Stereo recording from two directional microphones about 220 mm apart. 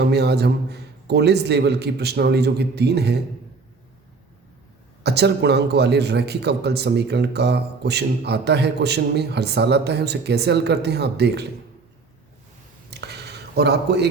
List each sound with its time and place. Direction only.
0.0 s a man's voice: 50° right (ahead or behind)
5.0 s a man's voice: 50° right (ahead or behind)
12.9 s a sound: 50° right (ahead or behind)